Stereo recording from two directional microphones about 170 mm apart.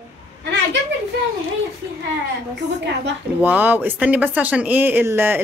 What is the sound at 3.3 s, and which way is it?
Speech, 10° right (ahead or behind).